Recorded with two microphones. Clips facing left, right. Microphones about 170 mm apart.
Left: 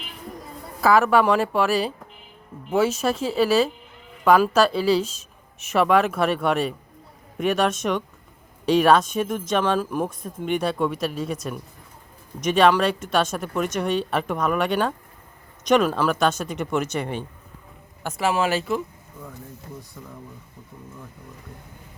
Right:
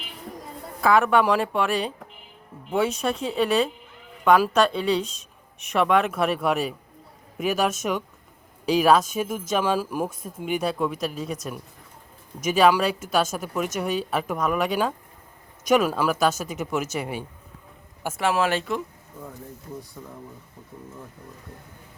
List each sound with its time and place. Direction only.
0.8 s speech: 5° left (ahead or behind)
20.0 s speech: 25° right (ahead or behind)